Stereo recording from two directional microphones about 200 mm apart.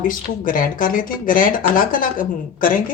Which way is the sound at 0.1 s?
45° left (ahead or behind).